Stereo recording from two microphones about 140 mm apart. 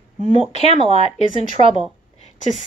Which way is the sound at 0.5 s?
50° left (ahead or behind).